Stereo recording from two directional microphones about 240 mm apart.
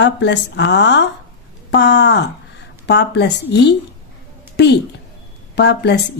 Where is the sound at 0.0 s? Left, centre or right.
Left.